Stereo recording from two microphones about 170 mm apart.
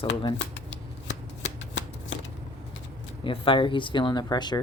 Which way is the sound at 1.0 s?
90° left.